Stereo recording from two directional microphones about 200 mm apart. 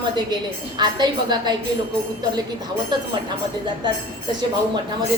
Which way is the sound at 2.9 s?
20° right (ahead or behind).